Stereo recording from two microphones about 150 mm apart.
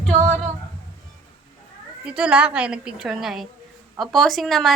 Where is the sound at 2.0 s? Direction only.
5° right (ahead or behind).